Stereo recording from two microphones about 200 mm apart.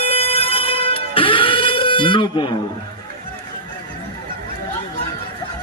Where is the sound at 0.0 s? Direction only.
30° left (ahead or behind).